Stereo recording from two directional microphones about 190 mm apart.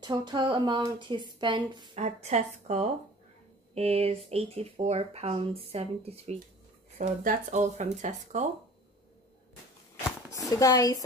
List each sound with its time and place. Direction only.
0.0 s speech: 25° right (ahead or behind)
2.0 s speech: 35° right (ahead or behind)
10.5 s speech: 20° left (ahead or behind)